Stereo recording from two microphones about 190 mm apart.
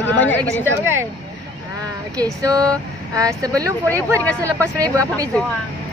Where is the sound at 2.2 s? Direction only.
20° right (ahead or behind).